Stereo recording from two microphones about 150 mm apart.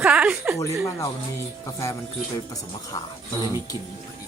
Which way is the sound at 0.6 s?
20° left (ahead or behind).